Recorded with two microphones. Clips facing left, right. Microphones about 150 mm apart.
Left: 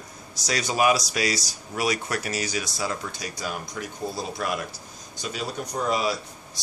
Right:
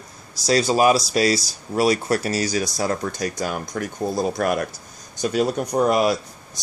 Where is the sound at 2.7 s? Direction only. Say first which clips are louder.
Right 7 dB; 50° right (ahead or behind).